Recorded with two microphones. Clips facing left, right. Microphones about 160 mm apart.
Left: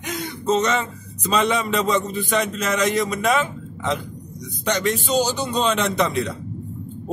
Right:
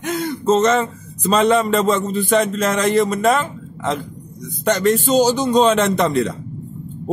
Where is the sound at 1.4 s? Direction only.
40° right (ahead or behind).